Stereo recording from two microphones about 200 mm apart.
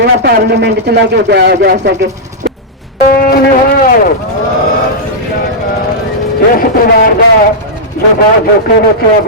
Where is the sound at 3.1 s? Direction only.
45° left (ahead or behind).